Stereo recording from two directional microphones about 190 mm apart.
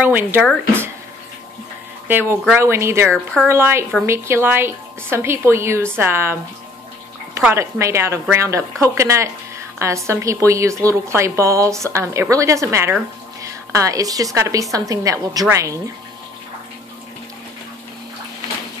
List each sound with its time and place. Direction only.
0.0 s a woman's voice: 10° right (ahead or behind)
2.0 s a woman's voice: 10° right (ahead or behind)
7.3 s a woman's voice: 15° right (ahead or behind)